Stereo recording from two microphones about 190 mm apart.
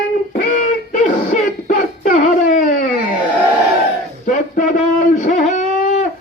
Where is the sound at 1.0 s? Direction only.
40° left (ahead or behind).